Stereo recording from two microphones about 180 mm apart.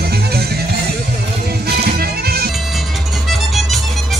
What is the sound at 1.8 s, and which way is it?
Music, 60° right (ahead or behind).